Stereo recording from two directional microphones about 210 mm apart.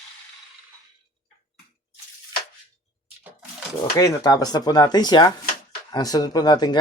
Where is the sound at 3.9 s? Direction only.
15° left (ahead or behind).